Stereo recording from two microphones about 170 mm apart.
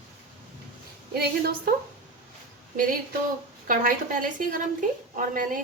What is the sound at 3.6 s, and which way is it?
Speech, 55° right (ahead or behind).